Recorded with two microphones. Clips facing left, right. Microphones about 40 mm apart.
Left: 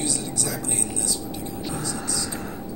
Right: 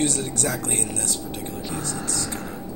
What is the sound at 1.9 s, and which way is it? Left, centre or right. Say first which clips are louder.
Speech: even; right.